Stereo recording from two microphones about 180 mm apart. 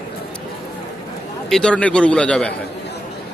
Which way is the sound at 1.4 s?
5° left (ahead or behind).